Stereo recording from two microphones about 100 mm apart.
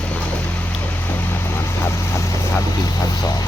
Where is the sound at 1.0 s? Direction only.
25° left (ahead or behind).